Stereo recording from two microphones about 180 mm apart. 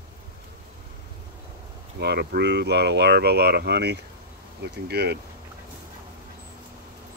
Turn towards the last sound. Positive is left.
turn(degrees=-65)  # may be behind; listen again after turning